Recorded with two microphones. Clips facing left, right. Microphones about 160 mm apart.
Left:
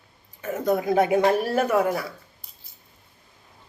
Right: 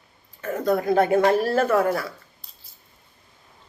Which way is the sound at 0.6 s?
20° left (ahead or behind).